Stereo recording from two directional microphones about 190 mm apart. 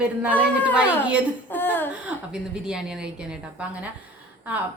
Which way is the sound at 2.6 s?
5° right (ahead or behind).